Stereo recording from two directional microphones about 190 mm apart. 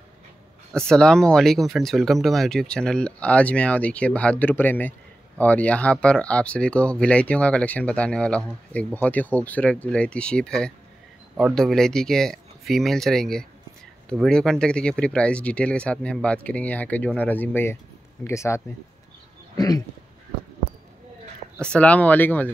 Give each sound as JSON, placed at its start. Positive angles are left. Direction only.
{"t": 0.7, "sound": "speech", "side_deg": 5}
{"t": 21.7, "sound": "speech", "side_deg": 5}